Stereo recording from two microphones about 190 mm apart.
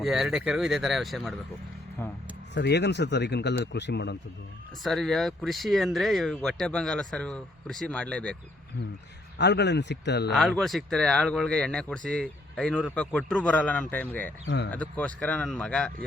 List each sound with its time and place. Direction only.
0.0 s speech: centre (ahead or behind)
2.6 s speech: 65° left (ahead or behind)
4.8 s speech: centre (ahead or behind)
9.4 s speech: 65° left (ahead or behind)
10.3 s speech: centre (ahead or behind)
14.4 s speech: 70° left (ahead or behind)
14.7 s speech: 5° left (ahead or behind)